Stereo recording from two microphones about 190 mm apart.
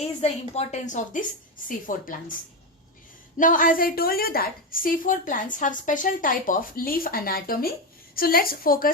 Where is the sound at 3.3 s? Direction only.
45° left (ahead or behind).